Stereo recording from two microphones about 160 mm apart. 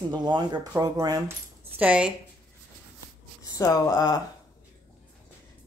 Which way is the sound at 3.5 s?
20° left (ahead or behind).